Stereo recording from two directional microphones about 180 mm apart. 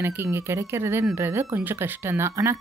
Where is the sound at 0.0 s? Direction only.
15° right (ahead or behind).